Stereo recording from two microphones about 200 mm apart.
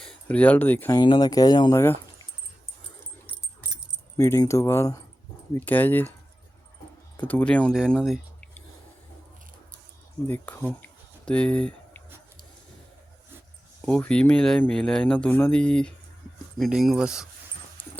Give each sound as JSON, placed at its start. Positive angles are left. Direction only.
{"t": 0.0, "sound": "speech", "side_deg": 5}
{"t": 4.2, "sound": "speech", "side_deg": 15}
{"t": 7.2, "sound": "speech", "side_deg": 10}
{"t": 10.2, "sound": "speech", "side_deg": 10}
{"t": 13.8, "sound": "speech", "side_deg": 5}